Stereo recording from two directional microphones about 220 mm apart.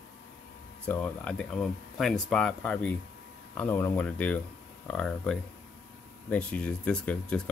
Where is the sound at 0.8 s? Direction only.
5° left (ahead or behind).